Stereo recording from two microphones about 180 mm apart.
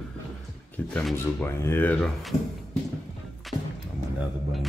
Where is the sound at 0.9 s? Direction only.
10° left (ahead or behind).